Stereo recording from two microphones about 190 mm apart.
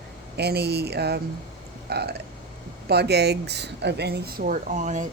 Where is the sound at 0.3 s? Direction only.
60° right (ahead or behind).